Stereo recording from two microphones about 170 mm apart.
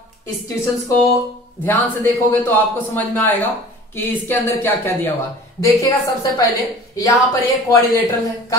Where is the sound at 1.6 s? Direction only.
10° left (ahead or behind).